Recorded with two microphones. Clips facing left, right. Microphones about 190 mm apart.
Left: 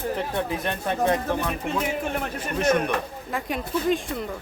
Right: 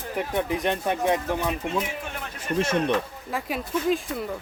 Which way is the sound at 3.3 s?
Centre (ahead or behind).